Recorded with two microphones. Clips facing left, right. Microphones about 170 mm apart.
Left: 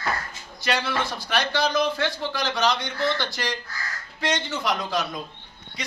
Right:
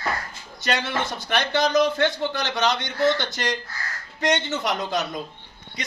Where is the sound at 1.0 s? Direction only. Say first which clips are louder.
Right 1 dB; 20° right (ahead or behind).